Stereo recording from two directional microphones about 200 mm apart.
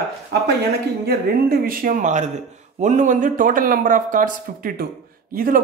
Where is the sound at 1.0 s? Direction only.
45° right (ahead or behind).